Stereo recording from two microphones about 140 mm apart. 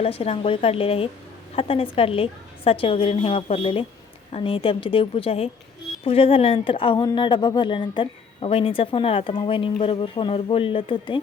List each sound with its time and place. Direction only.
0.0 s a woman's voice: 45° left (ahead or behind)